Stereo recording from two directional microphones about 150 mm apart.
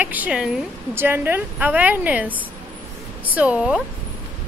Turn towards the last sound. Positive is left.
turn(degrees=-5)  # may be behind; listen again after turning